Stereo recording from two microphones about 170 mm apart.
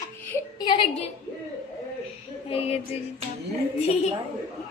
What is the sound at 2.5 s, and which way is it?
Female singing, 35° left (ahead or behind).